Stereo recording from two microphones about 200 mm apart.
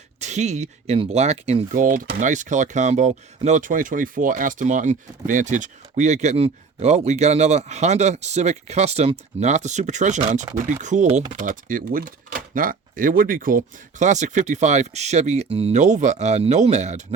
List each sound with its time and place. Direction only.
0.2 s speech: 35° right (ahead or behind)